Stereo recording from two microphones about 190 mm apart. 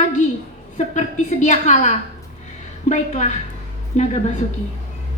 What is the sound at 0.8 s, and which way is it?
A woman's voice, 35° left (ahead or behind).